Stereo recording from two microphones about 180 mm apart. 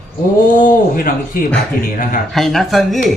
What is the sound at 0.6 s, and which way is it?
Speech, 50° left (ahead or behind).